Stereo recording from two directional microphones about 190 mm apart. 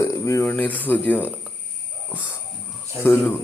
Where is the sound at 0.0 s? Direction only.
15° left (ahead or behind).